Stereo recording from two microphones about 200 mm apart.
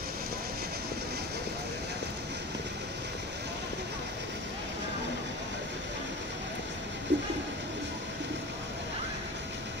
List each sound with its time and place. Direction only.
7.1 s bird: 65° right (ahead or behind)